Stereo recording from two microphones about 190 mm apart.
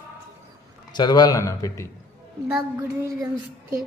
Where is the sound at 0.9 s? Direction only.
20° left (ahead or behind).